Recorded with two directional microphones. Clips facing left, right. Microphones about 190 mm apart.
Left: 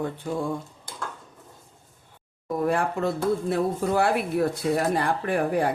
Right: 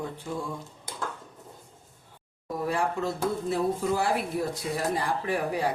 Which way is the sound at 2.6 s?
55° left (ahead or behind).